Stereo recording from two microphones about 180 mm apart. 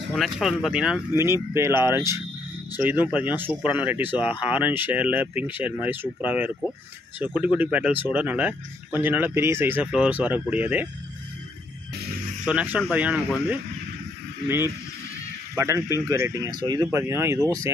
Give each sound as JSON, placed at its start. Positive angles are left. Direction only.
{"t": 0.1, "sound": "speech", "side_deg": 0}
{"t": 12.4, "sound": "speech", "side_deg": -5}
{"t": 15.5, "sound": "speech", "side_deg": -15}